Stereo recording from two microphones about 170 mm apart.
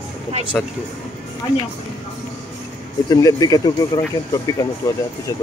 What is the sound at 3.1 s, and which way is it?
Speech, 20° left (ahead or behind).